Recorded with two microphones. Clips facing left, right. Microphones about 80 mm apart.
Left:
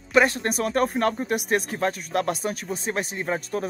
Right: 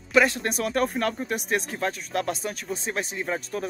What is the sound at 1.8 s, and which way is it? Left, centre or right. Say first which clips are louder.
Speech: left 3 dB; left.